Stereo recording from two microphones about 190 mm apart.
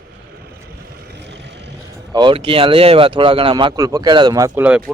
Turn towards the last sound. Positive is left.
turn(degrees=-15)  # may be behind; listen again after turning